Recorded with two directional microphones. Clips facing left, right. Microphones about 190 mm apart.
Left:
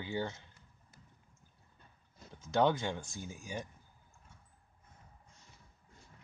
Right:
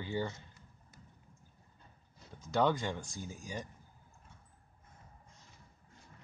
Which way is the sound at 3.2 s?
15° left (ahead or behind).